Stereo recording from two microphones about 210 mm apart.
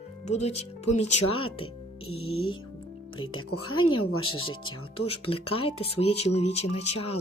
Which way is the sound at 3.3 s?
85° left.